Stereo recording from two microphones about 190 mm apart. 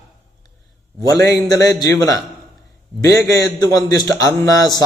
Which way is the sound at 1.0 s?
20° left (ahead or behind).